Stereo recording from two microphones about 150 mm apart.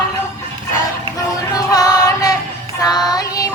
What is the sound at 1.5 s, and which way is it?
Music, 25° left (ahead or behind).